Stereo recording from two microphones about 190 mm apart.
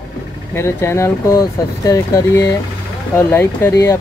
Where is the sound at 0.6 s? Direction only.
15° left (ahead or behind).